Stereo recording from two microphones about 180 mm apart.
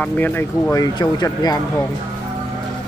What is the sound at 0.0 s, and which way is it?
Speech, 10° left (ahead or behind).